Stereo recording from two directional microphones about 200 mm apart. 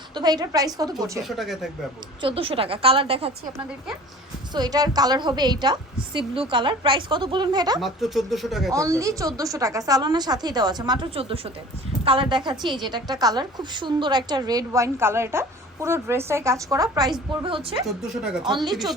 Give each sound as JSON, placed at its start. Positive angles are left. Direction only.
{"t": 0.1, "sound": "a woman's voice", "side_deg": -20}
{"t": 1.2, "sound": "speech", "side_deg": 0}
{"t": 2.2, "sound": "a woman's voice", "side_deg": -25}
{"t": 4.5, "sound": "a woman's voice", "side_deg": -20}
{"t": 7.8, "sound": "speech", "side_deg": 0}
{"t": 8.7, "sound": "a woman's voice", "side_deg": -15}
{"t": 17.8, "sound": "speech", "side_deg": -5}
{"t": 18.4, "sound": "a woman's voice", "side_deg": -20}